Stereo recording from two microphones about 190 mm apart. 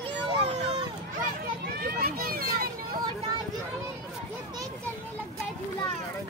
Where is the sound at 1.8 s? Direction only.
50° right (ahead or behind).